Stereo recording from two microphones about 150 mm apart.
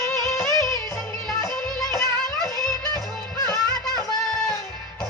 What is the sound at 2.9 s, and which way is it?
Music, 25° left (ahead or behind).